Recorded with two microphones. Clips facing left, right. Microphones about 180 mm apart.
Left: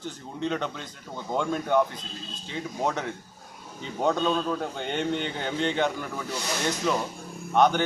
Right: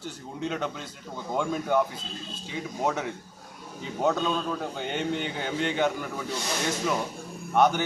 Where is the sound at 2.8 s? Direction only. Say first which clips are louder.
Right 1 dB; 10° right (ahead or behind).